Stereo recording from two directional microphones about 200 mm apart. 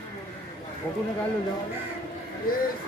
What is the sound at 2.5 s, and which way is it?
Speech, 45° left (ahead or behind).